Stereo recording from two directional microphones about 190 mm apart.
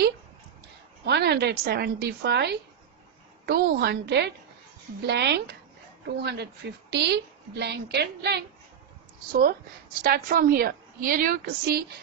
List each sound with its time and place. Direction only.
1.0 s a woman's voice: 60° right (ahead or behind)
9.3 s a woman's voice: 50° right (ahead or behind)